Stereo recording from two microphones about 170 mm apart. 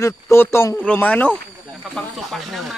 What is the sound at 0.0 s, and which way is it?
Speech, 15° left (ahead or behind).